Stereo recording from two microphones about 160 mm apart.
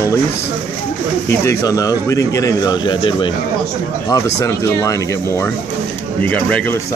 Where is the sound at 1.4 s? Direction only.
20° left (ahead or behind).